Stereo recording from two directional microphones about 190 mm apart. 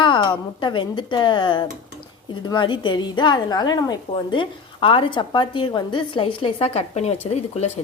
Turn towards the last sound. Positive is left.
turn(degrees=35)  # may be behind; listen again after turning